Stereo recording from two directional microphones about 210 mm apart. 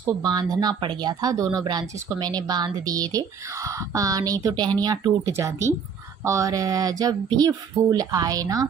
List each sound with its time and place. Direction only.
0.2 s a woman's voice: 20° right (ahead or behind)